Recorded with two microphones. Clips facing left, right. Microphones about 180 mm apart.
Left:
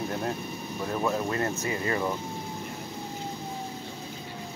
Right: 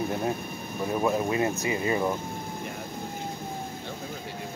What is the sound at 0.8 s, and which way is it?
Speech, 10° right (ahead or behind).